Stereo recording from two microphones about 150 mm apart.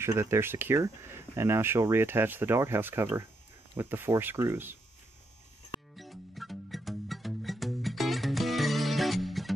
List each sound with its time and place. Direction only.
0.0 s speech: 15° right (ahead or behind)
5.9 s music: centre (ahead or behind)